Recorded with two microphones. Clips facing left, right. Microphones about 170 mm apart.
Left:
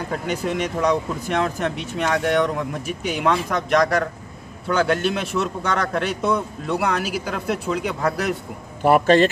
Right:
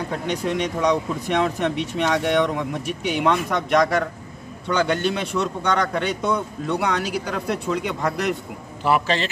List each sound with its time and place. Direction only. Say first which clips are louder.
0.1 s speech: left 1 dB; 5° left (ahead or behind)
8.8 s speech: left 6 dB; 50° left (ahead or behind)